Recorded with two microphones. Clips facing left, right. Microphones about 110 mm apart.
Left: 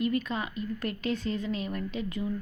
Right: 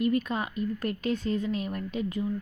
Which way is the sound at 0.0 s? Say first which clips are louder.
Right 2 dB; 50° right (ahead or behind).